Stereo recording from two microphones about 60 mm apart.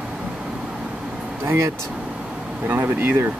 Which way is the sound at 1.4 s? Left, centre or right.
Right.